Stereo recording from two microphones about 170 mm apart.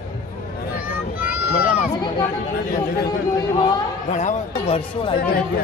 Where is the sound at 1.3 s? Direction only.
55° left (ahead or behind).